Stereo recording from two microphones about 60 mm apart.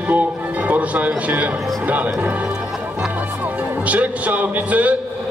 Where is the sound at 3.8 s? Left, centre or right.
Right.